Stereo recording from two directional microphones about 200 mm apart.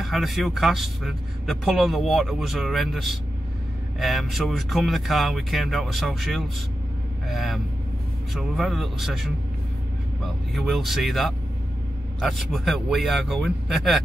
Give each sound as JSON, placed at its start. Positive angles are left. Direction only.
{"t": 0.0, "sound": "speech", "side_deg": 0}